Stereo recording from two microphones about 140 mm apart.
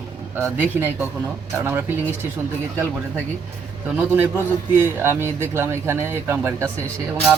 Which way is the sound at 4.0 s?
15° right (ahead or behind).